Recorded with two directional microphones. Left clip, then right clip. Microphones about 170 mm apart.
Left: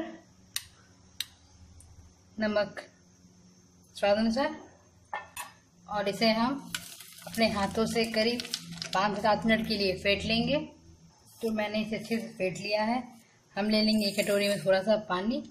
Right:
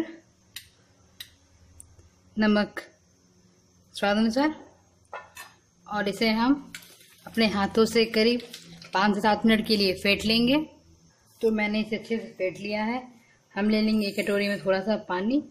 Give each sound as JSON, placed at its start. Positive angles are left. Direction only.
{"t": 2.3, "sound": "speech", "side_deg": -55}
{"t": 3.9, "sound": "speech", "side_deg": -55}
{"t": 5.9, "sound": "a woman's voice", "side_deg": -50}